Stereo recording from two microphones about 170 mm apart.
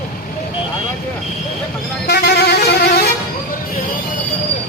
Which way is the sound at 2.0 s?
75° left (ahead or behind).